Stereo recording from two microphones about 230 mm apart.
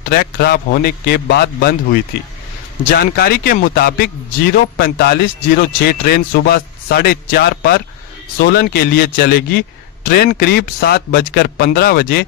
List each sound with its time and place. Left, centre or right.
0.1 s a man's voice: left
2.8 s a man's voice: left